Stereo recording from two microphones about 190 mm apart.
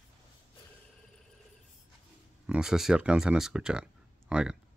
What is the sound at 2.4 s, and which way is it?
Speech, 5° right (ahead or behind).